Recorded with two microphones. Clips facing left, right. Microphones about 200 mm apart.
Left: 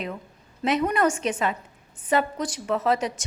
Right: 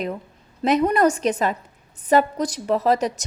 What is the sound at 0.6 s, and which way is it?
A woman's voice, 40° right (ahead or behind).